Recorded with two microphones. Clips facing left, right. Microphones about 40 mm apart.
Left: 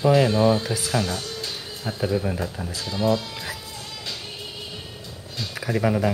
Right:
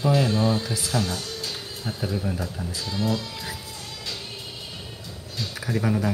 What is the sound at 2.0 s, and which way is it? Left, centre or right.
Speech, centre.